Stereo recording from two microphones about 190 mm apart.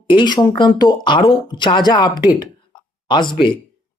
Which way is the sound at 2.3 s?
25° left (ahead or behind).